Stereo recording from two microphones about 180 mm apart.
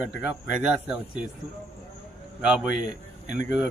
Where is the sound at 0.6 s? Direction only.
5° right (ahead or behind).